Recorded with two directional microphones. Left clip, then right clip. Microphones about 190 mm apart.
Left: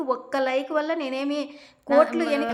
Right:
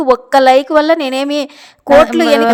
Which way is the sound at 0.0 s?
45° right (ahead or behind).